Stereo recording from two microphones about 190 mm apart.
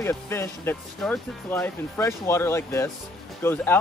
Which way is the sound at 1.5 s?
15° left (ahead or behind).